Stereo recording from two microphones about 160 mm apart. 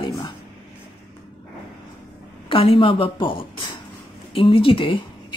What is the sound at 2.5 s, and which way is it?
Speech, 35° left (ahead or behind).